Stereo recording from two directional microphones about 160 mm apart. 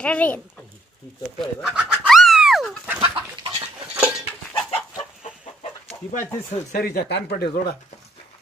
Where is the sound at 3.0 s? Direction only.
35° right (ahead or behind).